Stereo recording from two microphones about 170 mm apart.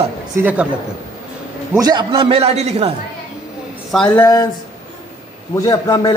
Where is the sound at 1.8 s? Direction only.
25° right (ahead or behind).